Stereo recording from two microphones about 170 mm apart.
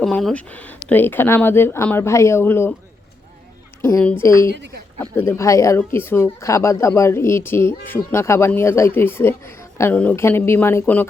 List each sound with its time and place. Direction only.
0.0 s speech: 5° left (ahead or behind)
3.8 s speech: 15° left (ahead or behind)
4.5 s speech: 90° right
5.1 s speech: 15° left (ahead or behind)